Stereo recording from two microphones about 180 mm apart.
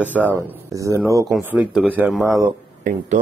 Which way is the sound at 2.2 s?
20° right (ahead or behind).